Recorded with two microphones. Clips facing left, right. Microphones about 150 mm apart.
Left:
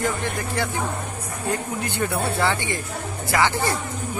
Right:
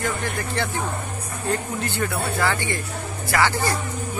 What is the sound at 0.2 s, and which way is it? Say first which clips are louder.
Speech: even; 15° left (ahead or behind).